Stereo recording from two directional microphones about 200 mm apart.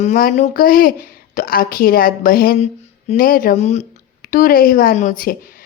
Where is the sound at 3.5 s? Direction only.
35° left (ahead or behind).